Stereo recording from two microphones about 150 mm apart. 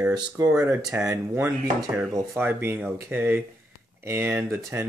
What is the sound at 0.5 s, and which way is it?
Speech, 10° right (ahead or behind).